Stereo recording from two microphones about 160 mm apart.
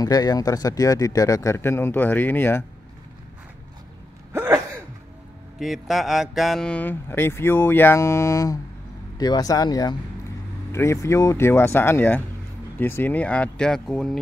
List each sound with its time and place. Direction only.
0.0 s speech: 25° left (ahead or behind)
4.3 s throat clearing: 15° right (ahead or behind)
5.6 s speech: centre (ahead or behind)